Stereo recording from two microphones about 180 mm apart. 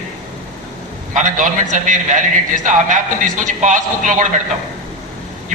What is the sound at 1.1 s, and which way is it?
A man's voice, 45° right (ahead or behind).